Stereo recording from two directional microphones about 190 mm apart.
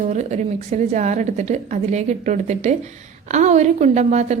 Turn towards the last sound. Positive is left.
turn(degrees=-40)  # may be behind; listen again after turning